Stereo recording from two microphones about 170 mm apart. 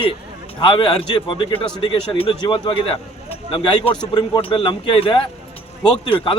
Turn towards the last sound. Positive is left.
turn(degrees=30)  # may be behind; listen again after turning